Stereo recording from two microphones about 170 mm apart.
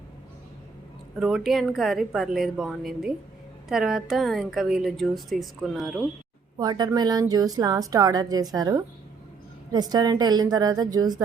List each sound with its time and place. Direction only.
1.2 s a woman's voice: centre (ahead or behind)
6.6 s a woman's voice: 25° right (ahead or behind)